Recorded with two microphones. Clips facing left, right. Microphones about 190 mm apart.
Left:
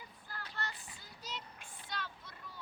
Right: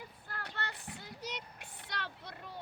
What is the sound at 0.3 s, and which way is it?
Child singing, 65° right (ahead or behind).